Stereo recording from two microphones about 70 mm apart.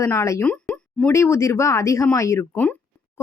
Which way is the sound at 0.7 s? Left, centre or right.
Centre.